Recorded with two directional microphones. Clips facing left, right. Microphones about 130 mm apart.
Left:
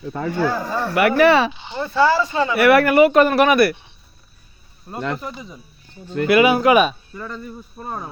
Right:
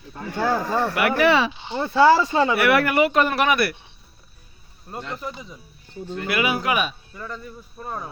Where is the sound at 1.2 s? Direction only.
55° left (ahead or behind).